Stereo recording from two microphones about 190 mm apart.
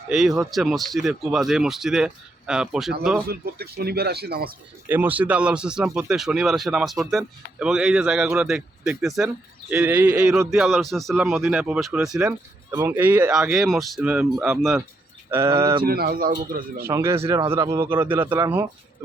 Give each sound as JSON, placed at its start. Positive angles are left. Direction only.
{"t": 0.1, "sound": "speech", "side_deg": 0}
{"t": 3.2, "sound": "speech", "side_deg": -55}
{"t": 4.9, "sound": "speech", "side_deg": -10}
{"t": 15.5, "sound": "speech", "side_deg": -15}
{"t": 15.8, "sound": "speech", "side_deg": -50}
{"t": 16.8, "sound": "speech", "side_deg": -15}